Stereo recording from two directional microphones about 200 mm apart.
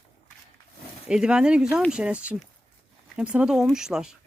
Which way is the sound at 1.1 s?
5° right (ahead or behind).